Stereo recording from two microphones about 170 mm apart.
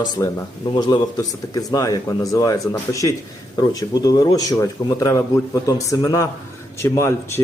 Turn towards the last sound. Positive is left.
turn(degrees=15)  # may be behind; listen again after turning